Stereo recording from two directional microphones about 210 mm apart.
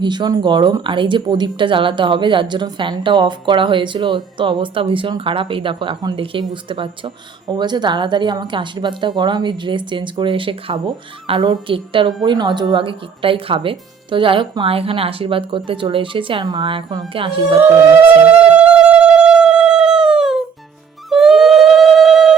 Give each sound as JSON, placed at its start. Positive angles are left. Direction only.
{"t": 0.0, "sound": "speech", "side_deg": -20}
{"t": 17.6, "sound": "insect", "side_deg": -10}
{"t": 18.3, "sound": "a sound", "side_deg": -5}